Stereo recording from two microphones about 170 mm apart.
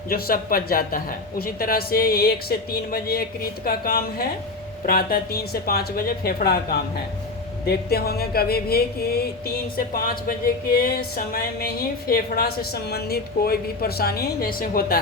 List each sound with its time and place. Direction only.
0.1 s music: 60° left (ahead or behind)
7.7 s music: 65° left (ahead or behind)